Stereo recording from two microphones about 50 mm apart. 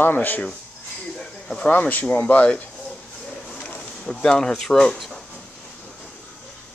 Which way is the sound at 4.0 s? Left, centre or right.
Centre.